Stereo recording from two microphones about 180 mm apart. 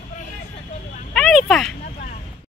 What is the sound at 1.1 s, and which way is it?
Vehicle, 5° left (ahead or behind).